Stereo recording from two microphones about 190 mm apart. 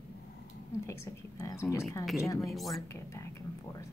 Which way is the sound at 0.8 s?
15° left (ahead or behind).